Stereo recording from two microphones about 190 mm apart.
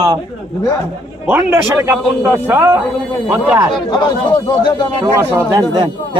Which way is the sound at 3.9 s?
25° left (ahead or behind).